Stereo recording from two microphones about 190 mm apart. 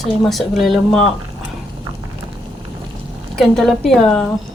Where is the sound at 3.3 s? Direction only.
Centre (ahead or behind).